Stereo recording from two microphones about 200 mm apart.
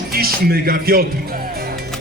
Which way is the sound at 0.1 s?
50° right (ahead or behind).